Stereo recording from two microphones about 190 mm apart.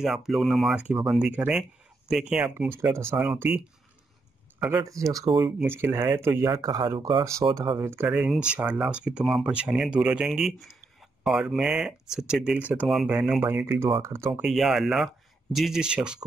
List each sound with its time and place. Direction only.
0.0 s speech: centre (ahead or behind)
4.7 s speech: 15° right (ahead or behind)
13.8 s speech: 25° right (ahead or behind)
14.1 s speech: 15° right (ahead or behind)
14.4 s speech: centre (ahead or behind)